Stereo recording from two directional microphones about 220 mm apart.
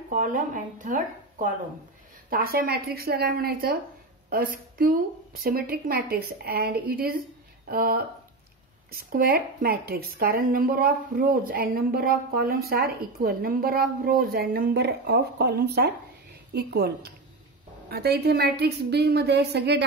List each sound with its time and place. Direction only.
0.1 s a woman's voice: 35° right (ahead or behind)